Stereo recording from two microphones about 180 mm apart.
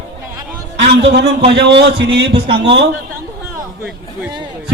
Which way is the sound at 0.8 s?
65° right (ahead or behind).